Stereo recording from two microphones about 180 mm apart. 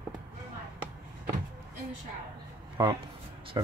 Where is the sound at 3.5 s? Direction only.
25° right (ahead or behind).